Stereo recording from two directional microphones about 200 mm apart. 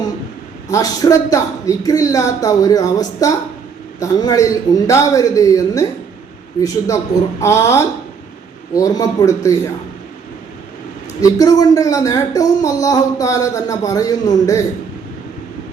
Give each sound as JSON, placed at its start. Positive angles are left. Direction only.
{"t": 0.7, "sound": "speech", "side_deg": 15}
{"t": 11.2, "sound": "speech", "side_deg": 20}